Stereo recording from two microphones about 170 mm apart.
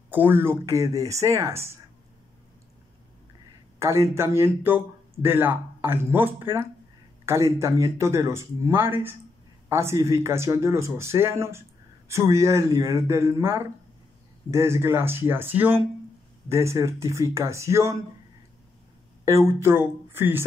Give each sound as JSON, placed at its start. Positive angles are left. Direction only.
{"t": 0.1, "sound": "a man's voice", "side_deg": -10}
{"t": 3.8, "sound": "a man's voice", "side_deg": -15}
{"t": 19.2, "sound": "a man's voice", "side_deg": -15}